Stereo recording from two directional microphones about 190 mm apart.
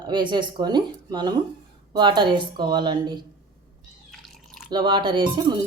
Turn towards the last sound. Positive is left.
turn(degrees=-25)  # may be behind; listen again after turning